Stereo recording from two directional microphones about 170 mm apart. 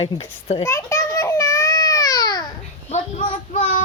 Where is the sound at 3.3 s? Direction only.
55° left (ahead or behind).